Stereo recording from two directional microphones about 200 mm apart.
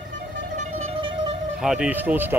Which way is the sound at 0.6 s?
35° right (ahead or behind).